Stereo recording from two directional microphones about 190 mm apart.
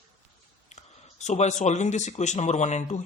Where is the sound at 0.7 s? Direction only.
35° left (ahead or behind).